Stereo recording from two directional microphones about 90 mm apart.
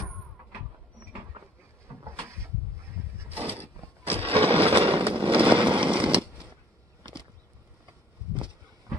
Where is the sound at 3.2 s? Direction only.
20° right (ahead or behind).